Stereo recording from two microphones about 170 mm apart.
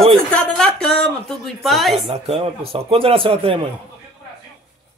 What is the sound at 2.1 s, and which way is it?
Speech, 35° right (ahead or behind).